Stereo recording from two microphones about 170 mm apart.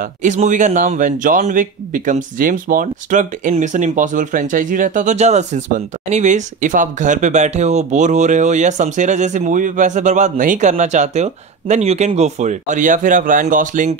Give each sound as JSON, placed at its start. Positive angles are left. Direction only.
{"t": 0.0, "sound": "speech", "side_deg": -45}